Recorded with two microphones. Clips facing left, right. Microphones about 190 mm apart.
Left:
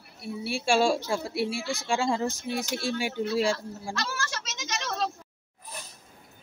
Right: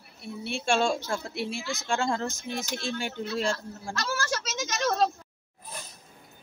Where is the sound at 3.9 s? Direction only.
50° right (ahead or behind).